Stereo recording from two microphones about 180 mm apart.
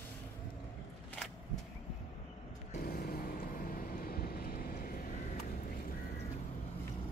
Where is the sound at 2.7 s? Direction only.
50° left (ahead or behind).